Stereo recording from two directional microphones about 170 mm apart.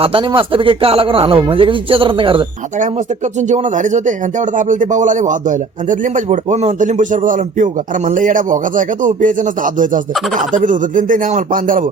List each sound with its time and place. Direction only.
0.0 s speech: 30° right (ahead or behind)
3.5 s speech: 45° right (ahead or behind)